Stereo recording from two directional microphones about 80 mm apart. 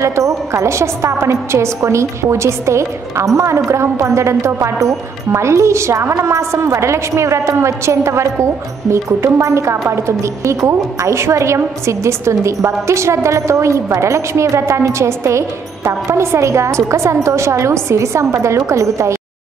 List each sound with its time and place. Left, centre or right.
0.0 s a woman's voice: right